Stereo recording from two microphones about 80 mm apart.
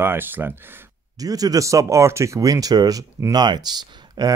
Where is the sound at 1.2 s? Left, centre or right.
Right.